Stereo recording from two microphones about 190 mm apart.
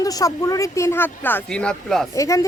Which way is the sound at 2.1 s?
15° left (ahead or behind).